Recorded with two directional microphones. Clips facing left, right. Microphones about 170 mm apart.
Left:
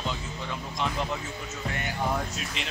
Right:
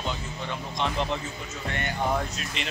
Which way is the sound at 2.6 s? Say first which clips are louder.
Right 5 dB; centre (ahead or behind).